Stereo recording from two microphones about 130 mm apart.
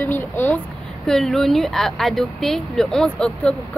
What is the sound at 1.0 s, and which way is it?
Speech, centre (ahead or behind).